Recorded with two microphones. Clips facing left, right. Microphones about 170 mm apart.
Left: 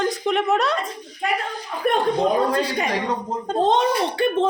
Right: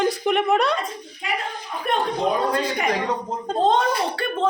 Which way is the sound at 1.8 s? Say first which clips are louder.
Left 4 dB; 50° left (ahead or behind).